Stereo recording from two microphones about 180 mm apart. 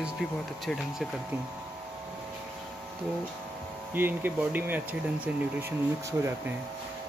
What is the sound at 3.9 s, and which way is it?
Speech, 10° right (ahead or behind).